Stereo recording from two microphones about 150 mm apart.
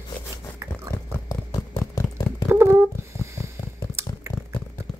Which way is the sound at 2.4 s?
15° right (ahead or behind).